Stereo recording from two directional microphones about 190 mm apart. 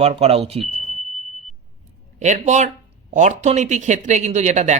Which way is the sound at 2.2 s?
40° right (ahead or behind).